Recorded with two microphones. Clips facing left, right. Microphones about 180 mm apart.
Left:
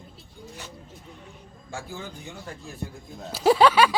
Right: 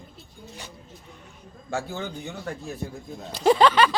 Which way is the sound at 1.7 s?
70° right (ahead or behind).